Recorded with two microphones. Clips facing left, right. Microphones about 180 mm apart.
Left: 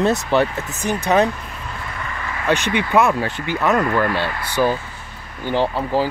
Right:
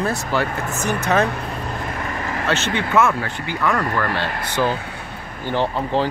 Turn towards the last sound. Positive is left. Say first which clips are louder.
# left 1 dB
turn(degrees=10)  # may be behind; listen again after turning